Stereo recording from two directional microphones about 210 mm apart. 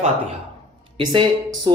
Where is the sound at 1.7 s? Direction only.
20° right (ahead or behind).